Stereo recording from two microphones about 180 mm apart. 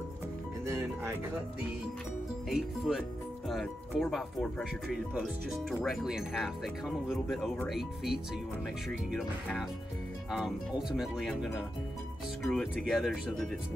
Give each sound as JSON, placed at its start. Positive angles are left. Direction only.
{"t": 0.7, "sound": "speech", "side_deg": -15}
{"t": 2.5, "sound": "speech", "side_deg": 0}
{"t": 5.7, "sound": "speech", "side_deg": 0}